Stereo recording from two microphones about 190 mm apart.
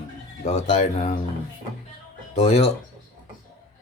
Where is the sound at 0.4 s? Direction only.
35° left (ahead or behind).